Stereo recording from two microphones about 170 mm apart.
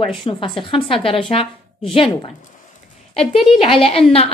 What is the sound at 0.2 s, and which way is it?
A woman's voice, 30° left (ahead or behind).